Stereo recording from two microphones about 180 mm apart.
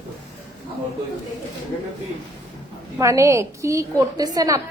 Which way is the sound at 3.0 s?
15° right (ahead or behind).